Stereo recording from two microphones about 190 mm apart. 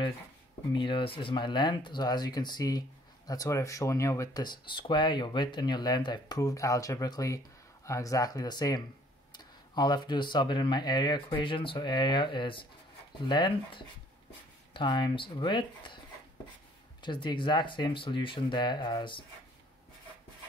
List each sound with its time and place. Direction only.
0.7 s speech: 25° left (ahead or behind)
17.0 s speech: 25° left (ahead or behind)